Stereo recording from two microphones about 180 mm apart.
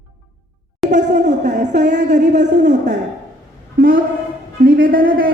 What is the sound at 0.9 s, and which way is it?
A woman's voice, 45° right (ahead or behind).